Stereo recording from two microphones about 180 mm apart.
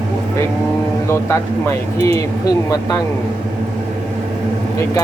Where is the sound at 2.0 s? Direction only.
20° left (ahead or behind).